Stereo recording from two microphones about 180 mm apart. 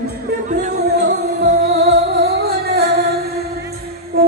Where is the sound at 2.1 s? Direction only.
65° right (ahead or behind).